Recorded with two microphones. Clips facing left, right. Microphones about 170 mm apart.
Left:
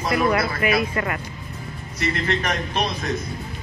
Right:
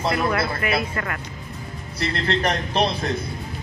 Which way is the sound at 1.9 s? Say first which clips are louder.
Even; 35° right (ahead or behind).